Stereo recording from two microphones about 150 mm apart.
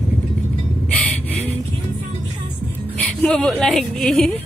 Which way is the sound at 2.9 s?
10° left (ahead or behind).